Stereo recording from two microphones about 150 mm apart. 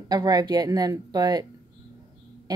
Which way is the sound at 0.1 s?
25° right (ahead or behind).